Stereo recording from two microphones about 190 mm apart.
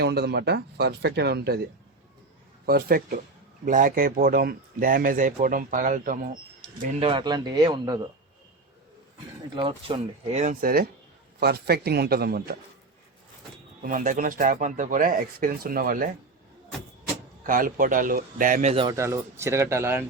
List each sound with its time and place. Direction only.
0.0 s speech: 60° right (ahead or behind)
2.6 s speech: 50° right (ahead or behind)
7.0 s speech: 25° right (ahead or behind)
9.6 s speech: 30° right (ahead or behind); by 12.5 s 55° right (ahead or behind)
13.8 s speech: 45° right (ahead or behind)
17.4 s speech: 45° right (ahead or behind)
18.9 s speech: 15° right (ahead or behind)